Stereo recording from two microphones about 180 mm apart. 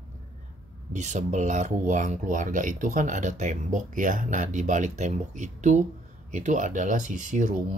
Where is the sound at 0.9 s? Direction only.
40° right (ahead or behind).